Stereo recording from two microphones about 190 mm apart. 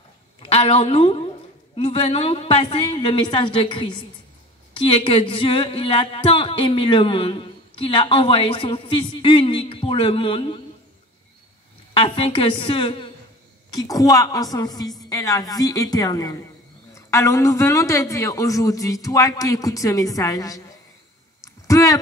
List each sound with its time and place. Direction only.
0.5 s a woman's voice: 30° left (ahead or behind)
11.9 s a man's voice: 25° left (ahead or behind)
21.6 s speech: 15° left (ahead or behind)